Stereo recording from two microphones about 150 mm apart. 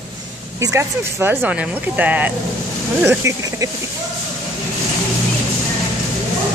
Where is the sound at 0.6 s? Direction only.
15° right (ahead or behind).